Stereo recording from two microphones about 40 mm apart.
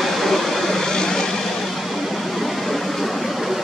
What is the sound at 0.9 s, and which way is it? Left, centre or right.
Vehicle, centre.